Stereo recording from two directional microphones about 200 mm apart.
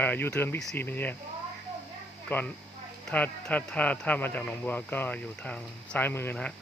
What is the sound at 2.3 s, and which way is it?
Speech, 10° left (ahead or behind).